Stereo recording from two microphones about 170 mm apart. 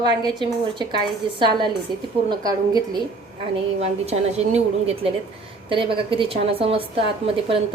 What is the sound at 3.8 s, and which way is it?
A woman's voice, 40° right (ahead or behind).